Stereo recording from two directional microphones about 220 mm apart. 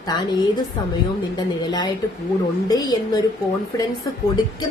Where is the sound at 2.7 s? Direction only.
15° left (ahead or behind).